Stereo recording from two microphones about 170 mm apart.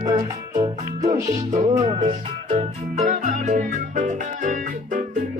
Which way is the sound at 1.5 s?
40° right (ahead or behind).